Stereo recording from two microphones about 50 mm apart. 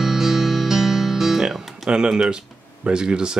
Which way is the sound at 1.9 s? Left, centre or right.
Centre.